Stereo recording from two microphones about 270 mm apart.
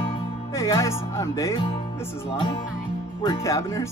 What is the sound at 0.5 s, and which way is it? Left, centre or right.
Speech, centre.